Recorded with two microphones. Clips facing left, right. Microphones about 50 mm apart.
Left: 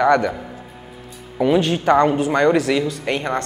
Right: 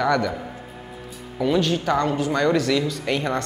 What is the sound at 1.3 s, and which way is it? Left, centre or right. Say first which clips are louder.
Speech: left 4 dB; left.